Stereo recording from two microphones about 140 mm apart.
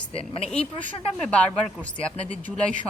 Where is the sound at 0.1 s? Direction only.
45° left (ahead or behind).